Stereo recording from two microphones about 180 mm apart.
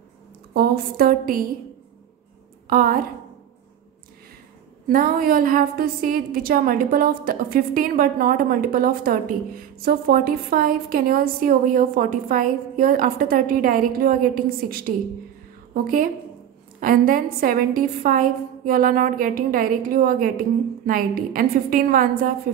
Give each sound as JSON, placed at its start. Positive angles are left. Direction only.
{"t": 0.6, "sound": "a woman's voice", "side_deg": -55}
{"t": 2.7, "sound": "a woman's voice", "side_deg": -55}
{"t": 4.8, "sound": "a woman's voice", "side_deg": -55}